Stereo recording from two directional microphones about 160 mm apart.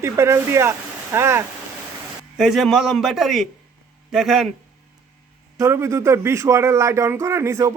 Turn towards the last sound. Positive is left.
turn(degrees=-15)  # may be behind; listen again after turning